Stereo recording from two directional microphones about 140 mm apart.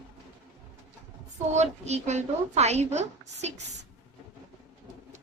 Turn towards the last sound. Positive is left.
turn(degrees=-55)  # may be behind; listen again after turning